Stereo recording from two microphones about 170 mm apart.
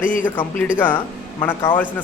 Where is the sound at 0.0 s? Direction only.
50° left (ahead or behind).